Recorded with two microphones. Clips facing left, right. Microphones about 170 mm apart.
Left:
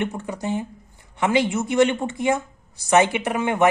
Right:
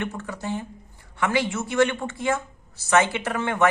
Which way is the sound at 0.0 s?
20° left (ahead or behind).